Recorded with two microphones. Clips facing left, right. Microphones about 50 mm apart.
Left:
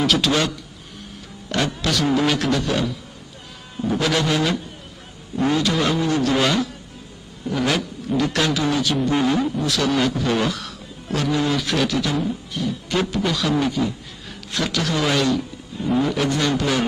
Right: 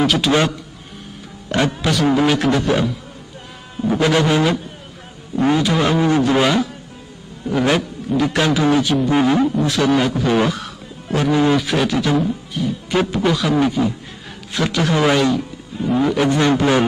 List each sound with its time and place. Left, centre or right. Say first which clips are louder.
0.0 s a man's voice: right 2 dB; centre
0.3 s a man's voice: right 4 dB; right; by 16.3 s centre
16.3 s a man's voice: right 6 dB; right